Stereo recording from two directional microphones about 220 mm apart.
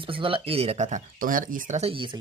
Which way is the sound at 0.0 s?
25° right (ahead or behind).